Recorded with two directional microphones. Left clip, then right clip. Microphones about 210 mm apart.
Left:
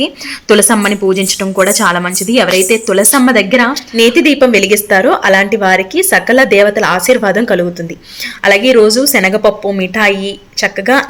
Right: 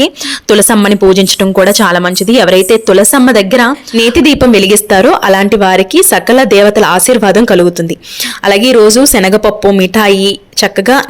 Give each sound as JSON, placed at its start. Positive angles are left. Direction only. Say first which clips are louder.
{"t": 0.4, "sound": "a woman's voice", "louder": "right 2 dB", "side_deg": -40}